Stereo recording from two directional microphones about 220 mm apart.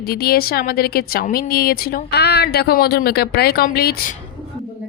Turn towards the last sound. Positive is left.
turn(degrees=45)  # may be behind; listen again after turning